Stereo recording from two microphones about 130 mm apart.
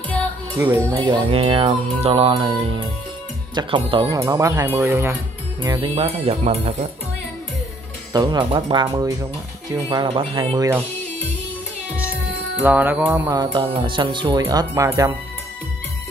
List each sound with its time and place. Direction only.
0.9 s music: 40° right (ahead or behind)
3.5 s speech: 40° right (ahead or behind)
4.2 s speech: 25° right (ahead or behind)
5.8 s music: 45° right (ahead or behind)
8.1 s speech: 35° right (ahead or behind)
12.6 s music: 15° right (ahead or behind)
13.3 s speech: 35° right (ahead or behind)
14.4 s speech: 25° right (ahead or behind)